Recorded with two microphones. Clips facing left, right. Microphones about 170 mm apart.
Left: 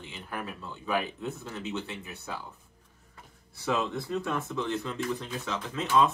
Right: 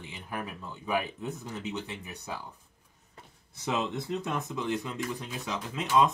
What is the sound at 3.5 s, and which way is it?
Speech, 20° right (ahead or behind).